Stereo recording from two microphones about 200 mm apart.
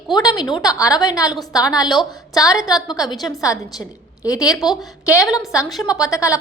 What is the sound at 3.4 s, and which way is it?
A woman's voice, 15° left (ahead or behind).